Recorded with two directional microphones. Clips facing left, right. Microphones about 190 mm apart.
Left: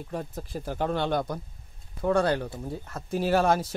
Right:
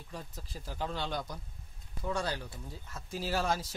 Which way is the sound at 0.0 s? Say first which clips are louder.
Left 11 dB; 55° left (ahead or behind).